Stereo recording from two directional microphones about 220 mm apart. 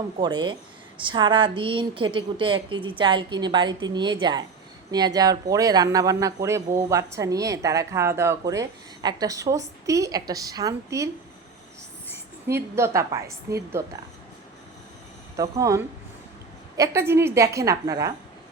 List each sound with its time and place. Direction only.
0.2 s a woman's voice: 20° right (ahead or behind)
12.1 s a woman's voice: 10° right (ahead or behind)
15.4 s speech: 15° right (ahead or behind)